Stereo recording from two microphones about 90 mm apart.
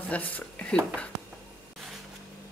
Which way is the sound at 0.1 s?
15° left (ahead or behind).